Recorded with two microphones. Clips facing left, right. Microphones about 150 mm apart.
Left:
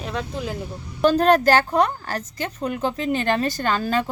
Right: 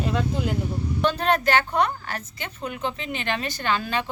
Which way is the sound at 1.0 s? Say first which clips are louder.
Left 7 dB; 40° left (ahead or behind).